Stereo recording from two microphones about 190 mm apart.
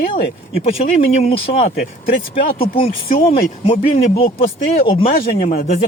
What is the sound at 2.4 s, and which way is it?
Speech, 50° left (ahead or behind).